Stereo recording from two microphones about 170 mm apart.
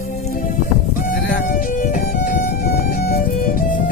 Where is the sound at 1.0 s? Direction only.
75° left (ahead or behind).